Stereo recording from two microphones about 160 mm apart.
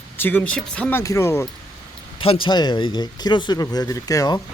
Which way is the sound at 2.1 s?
35° left (ahead or behind).